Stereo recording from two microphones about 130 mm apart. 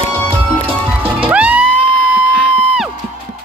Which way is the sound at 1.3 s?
10° right (ahead or behind).